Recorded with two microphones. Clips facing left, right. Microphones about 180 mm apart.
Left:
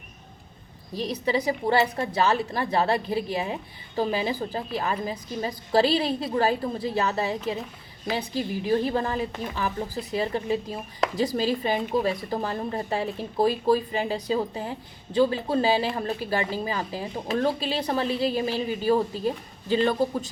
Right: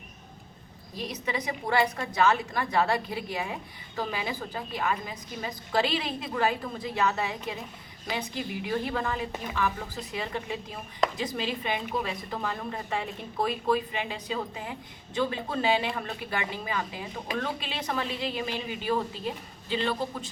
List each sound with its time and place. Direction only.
0.9 s a woman's voice: 35° left (ahead or behind)